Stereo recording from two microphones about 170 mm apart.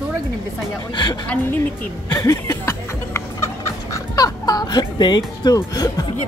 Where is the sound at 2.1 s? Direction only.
15° left (ahead or behind).